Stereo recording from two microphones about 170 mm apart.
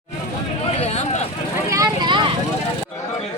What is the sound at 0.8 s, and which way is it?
Vehicle, 40° left (ahead or behind).